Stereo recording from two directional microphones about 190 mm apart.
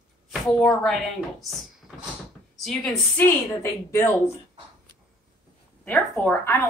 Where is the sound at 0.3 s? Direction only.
Centre (ahead or behind).